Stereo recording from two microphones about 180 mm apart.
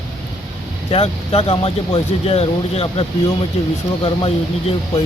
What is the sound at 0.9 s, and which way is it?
Speech, 30° left (ahead or behind).